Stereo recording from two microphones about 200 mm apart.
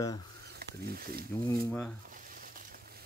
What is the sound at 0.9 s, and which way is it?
Speech, 50° right (ahead or behind).